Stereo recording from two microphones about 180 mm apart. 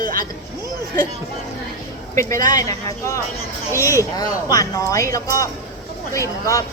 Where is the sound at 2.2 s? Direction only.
15° left (ahead or behind).